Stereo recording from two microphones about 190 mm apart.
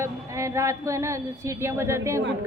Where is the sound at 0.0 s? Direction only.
15° right (ahead or behind).